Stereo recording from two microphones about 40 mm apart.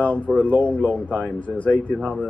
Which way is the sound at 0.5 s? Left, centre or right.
Left.